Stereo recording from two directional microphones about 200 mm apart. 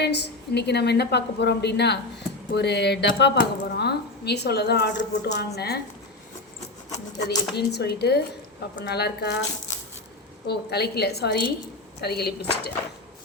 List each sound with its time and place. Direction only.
0.0 s a woman's voice: 55° left (ahead or behind)
7.3 s a woman's voice: 55° left (ahead or behind)
10.4 s a woman's voice: 55° left (ahead or behind)